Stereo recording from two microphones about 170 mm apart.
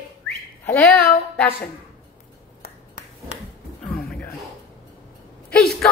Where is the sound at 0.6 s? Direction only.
10° left (ahead or behind).